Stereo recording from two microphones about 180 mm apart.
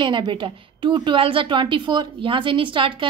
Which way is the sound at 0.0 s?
25° right (ahead or behind).